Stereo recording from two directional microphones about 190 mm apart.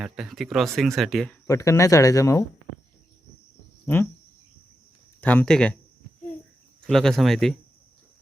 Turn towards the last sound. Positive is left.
turn(degrees=0)  # may be behind; listen again after turning